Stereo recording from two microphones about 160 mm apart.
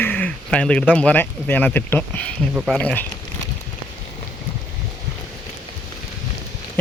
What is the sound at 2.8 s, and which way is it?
Speech, 5° left (ahead or behind).